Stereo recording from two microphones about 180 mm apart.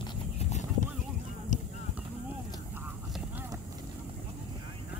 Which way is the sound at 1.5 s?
45° left (ahead or behind).